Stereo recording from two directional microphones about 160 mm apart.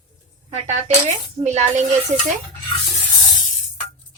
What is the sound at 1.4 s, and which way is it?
Speech, 45° right (ahead or behind).